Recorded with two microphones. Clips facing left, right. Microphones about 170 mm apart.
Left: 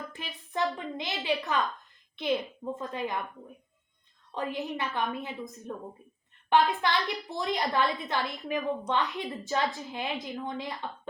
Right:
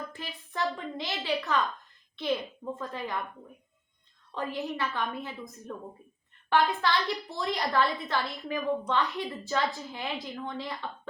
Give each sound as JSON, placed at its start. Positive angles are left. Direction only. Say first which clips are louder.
{"t": 0.1, "sound": "a woman's voice", "louder": "left 2 dB", "side_deg": 20}
{"t": 2.7, "sound": "a woman's voice", "louder": "left 3 dB", "side_deg": 20}
{"t": 4.4, "sound": "a woman's voice", "louder": "even", "side_deg": 20}